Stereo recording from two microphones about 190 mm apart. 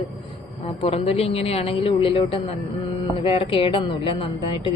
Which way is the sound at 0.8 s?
30° left (ahead or behind).